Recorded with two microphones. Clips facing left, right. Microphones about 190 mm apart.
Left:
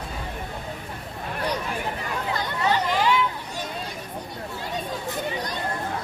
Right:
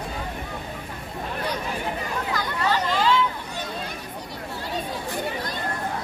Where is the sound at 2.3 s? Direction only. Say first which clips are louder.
Left 1 dB; 20° left (ahead or behind).